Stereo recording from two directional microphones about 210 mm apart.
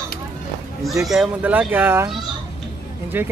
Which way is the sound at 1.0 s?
Centre (ahead or behind).